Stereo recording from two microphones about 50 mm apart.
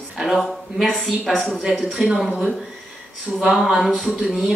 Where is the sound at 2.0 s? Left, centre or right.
Centre.